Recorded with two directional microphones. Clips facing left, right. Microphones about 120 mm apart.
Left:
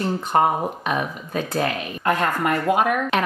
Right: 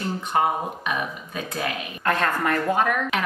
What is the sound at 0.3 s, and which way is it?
Speech, 40° left (ahead or behind).